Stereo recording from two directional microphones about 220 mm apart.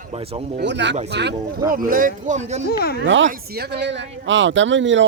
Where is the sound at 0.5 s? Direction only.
50° right (ahead or behind).